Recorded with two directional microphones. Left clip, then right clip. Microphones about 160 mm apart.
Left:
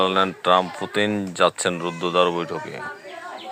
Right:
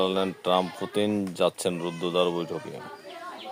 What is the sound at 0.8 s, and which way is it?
Speech, 30° left (ahead or behind).